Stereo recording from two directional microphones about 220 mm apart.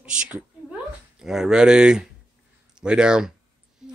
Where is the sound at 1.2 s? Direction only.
Centre (ahead or behind).